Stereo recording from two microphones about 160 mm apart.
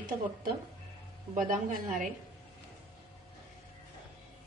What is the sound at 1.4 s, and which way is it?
Speech, 55° right (ahead or behind).